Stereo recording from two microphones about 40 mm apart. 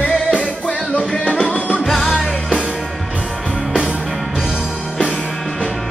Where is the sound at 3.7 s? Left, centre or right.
Right.